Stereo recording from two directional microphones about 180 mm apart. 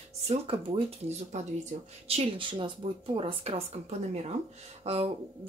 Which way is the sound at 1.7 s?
45° right (ahead or behind).